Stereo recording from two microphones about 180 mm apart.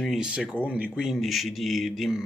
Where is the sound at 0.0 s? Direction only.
5° right (ahead or behind).